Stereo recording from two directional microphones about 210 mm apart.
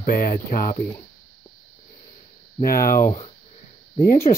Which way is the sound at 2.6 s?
45° left (ahead or behind).